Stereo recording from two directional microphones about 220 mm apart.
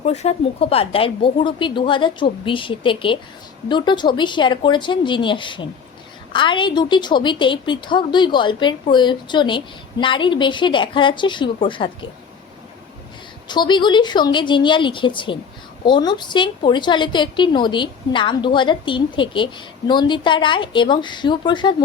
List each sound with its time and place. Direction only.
0.0 s a woman's voice: 30° left (ahead or behind)
13.5 s a woman's voice: 20° left (ahead or behind)